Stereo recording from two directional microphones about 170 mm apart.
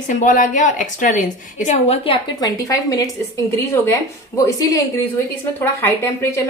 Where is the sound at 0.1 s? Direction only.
50° left (ahead or behind).